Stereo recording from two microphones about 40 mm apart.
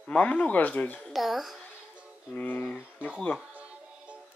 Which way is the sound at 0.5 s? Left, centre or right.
Left.